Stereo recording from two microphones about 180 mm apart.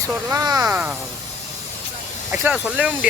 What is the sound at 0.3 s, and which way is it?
Speech, 20° right (ahead or behind).